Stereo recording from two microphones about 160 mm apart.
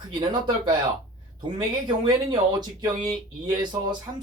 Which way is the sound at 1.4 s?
30° right (ahead or behind).